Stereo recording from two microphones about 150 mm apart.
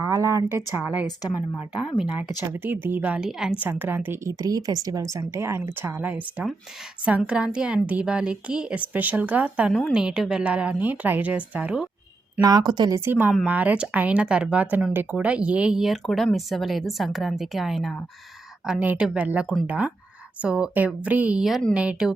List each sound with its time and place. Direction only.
0.1 s a sound: 20° right (ahead or behind)
2.5 s a woman's voice: 10° right (ahead or behind)
12.4 s speech: 25° right (ahead or behind)
13.1 s a woman's voice: 10° right (ahead or behind)